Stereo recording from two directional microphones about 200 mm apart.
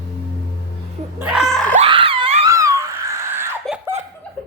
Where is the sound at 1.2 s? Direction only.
5° right (ahead or behind).